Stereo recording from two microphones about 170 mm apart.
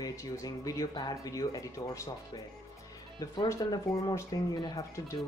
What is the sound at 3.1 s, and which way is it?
Speech, 20° left (ahead or behind).